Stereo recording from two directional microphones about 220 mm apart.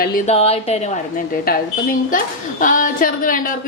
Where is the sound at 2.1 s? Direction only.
35° left (ahead or behind).